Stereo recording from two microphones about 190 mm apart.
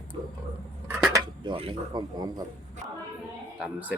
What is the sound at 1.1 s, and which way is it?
Speech, 25° right (ahead or behind).